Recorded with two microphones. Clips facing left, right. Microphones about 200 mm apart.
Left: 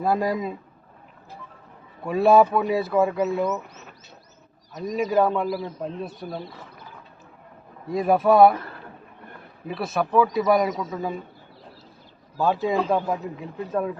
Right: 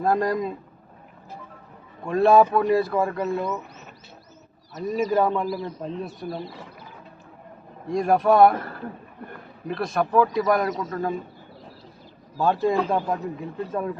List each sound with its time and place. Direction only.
0.0 s speech: 5° left (ahead or behind)
2.0 s speech: 5° left (ahead or behind)
4.7 s speech: centre (ahead or behind)
7.9 s speech: 5° left (ahead or behind)
9.6 s speech: 5° left (ahead or behind)
12.4 s speech: centre (ahead or behind)